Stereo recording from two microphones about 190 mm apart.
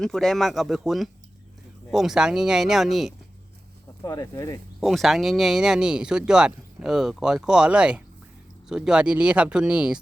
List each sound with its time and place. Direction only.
0.0 s speech: centre (ahead or behind)
4.0 s speech: 15° left (ahead or behind)
4.8 s speech: centre (ahead or behind)